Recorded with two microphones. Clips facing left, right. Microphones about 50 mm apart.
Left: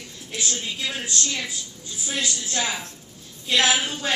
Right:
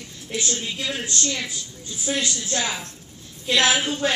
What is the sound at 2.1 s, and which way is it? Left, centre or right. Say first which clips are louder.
Speech: right 4 dB; centre.